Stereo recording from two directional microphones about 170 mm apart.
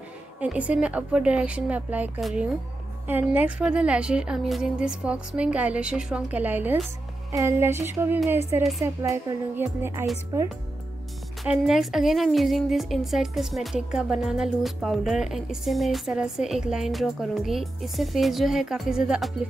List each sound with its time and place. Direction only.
0.4 s a woman's voice: 10° right (ahead or behind)
11.4 s a woman's voice: 5° right (ahead or behind)